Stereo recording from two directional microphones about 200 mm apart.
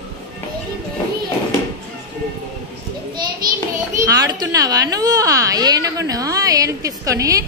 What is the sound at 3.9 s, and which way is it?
A child's voice, 15° right (ahead or behind).